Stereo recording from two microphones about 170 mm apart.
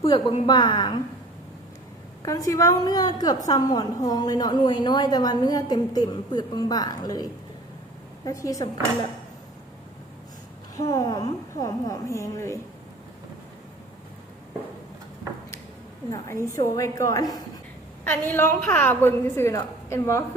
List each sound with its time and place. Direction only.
0.0 s a woman's voice: 35° left (ahead or behind)
2.2 s a woman's voice: 20° left (ahead or behind)
10.8 s a woman's voice: 20° left (ahead or behind)
16.1 s a woman's voice: 15° left (ahead or behind)